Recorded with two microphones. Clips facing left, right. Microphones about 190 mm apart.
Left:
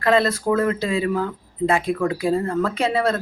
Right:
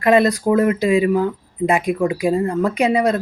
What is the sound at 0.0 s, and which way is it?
Speech, 20° right (ahead or behind).